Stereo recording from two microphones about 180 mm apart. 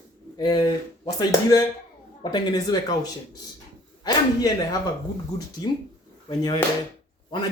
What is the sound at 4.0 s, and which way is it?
Speech, 20° left (ahead or behind).